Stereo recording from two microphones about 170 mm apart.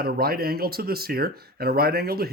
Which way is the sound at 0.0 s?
60° right (ahead or behind).